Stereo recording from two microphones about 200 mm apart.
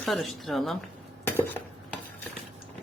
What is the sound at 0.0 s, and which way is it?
Speech, centre (ahead or behind).